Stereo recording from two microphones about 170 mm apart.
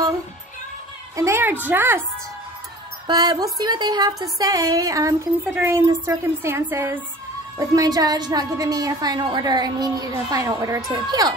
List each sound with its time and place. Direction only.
1.1 s a woman's voice: 15° right (ahead or behind)
3.1 s speech: 20° right (ahead or behind)